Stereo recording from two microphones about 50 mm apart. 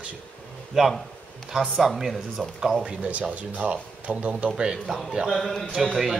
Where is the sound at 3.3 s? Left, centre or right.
Right.